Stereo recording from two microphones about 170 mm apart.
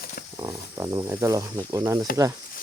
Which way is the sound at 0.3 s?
20° right (ahead or behind).